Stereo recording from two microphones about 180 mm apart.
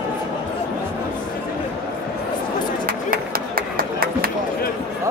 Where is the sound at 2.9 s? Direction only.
55° right (ahead or behind).